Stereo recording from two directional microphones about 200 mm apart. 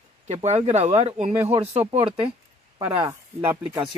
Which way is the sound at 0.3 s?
35° right (ahead or behind).